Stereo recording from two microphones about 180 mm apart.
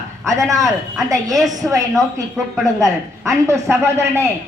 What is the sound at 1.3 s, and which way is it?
Speech, centre (ahead or behind).